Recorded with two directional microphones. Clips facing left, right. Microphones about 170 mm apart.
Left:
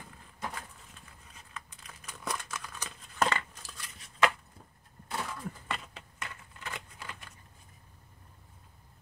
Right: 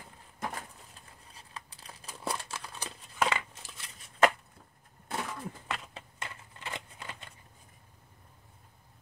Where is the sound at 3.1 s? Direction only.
5° right (ahead or behind).